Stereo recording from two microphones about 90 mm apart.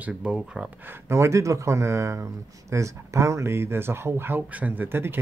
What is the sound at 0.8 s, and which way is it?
Speech, 25° right (ahead or behind).